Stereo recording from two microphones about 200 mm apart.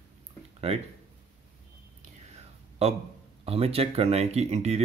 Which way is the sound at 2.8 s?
30° right (ahead or behind).